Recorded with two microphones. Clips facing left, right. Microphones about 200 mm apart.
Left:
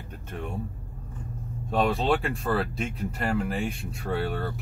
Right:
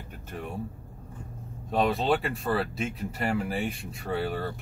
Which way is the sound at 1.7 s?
Centre (ahead or behind).